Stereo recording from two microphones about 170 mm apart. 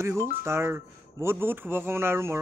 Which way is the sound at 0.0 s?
15° right (ahead or behind).